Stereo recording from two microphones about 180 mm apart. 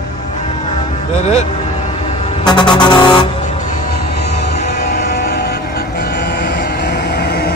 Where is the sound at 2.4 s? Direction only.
25° left (ahead or behind).